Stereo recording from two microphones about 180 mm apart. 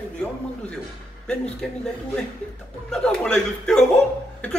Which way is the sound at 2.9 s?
5° left (ahead or behind).